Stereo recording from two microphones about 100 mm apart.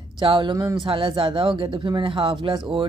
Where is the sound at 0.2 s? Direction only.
55° right (ahead or behind).